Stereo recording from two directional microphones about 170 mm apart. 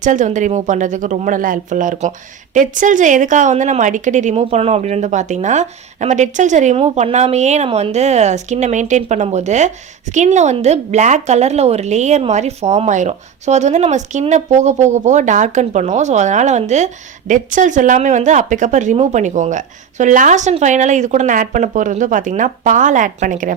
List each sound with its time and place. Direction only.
0.0 s a woman's voice: 50° right (ahead or behind)